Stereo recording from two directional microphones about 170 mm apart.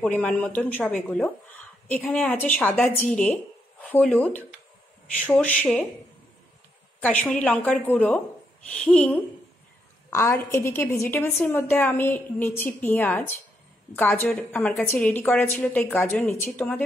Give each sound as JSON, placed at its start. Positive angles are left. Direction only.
{"t": 0.0, "sound": "speech", "side_deg": 5}
{"t": 7.0, "sound": "speech", "side_deg": 10}
{"t": 10.0, "sound": "speech", "side_deg": 15}